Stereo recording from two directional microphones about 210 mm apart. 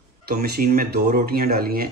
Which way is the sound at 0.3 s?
45° right (ahead or behind).